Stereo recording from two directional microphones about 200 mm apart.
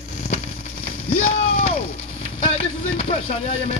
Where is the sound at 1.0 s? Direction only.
35° left (ahead or behind).